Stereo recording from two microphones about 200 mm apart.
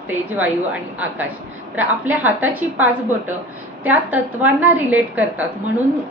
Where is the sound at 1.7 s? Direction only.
10° right (ahead or behind).